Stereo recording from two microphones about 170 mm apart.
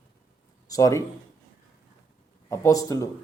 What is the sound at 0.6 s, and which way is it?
Speech, 20° left (ahead or behind).